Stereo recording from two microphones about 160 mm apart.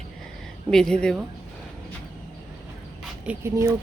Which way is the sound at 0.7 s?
5° left (ahead or behind).